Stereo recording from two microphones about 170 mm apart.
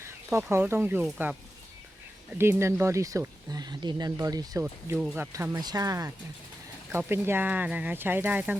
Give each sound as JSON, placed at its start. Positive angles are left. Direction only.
{"t": 0.0, "sound": "speech", "side_deg": -15}
{"t": 2.4, "sound": "speech", "side_deg": -15}
{"t": 4.6, "sound": "speech", "side_deg": -10}